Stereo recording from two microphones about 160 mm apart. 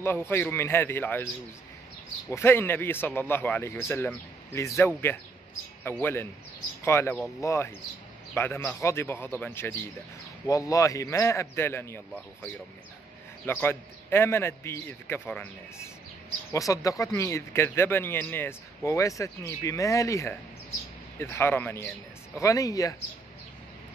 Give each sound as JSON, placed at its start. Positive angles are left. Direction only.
{"t": 0.0, "sound": "a man's voice", "side_deg": 15}
{"t": 13.5, "sound": "a man's voice", "side_deg": 15}